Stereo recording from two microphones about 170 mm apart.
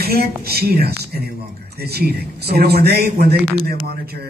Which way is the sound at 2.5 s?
65° right (ahead or behind).